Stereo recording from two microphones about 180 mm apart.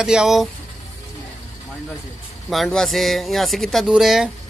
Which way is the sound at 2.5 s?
Centre (ahead or behind).